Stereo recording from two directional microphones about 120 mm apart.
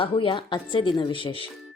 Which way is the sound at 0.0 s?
45° left (ahead or behind).